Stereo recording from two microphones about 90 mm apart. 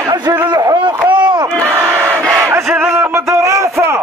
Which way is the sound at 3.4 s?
35° right (ahead or behind).